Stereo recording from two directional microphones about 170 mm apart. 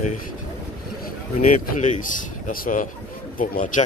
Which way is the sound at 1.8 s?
50° left (ahead or behind).